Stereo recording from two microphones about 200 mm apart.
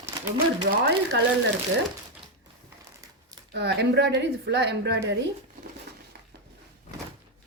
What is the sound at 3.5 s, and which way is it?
A woman's voice, 60° right (ahead or behind).